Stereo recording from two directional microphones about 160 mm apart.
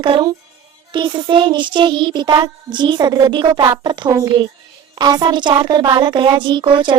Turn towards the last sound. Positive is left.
turn(degrees=-30)  # may be behind; listen again after turning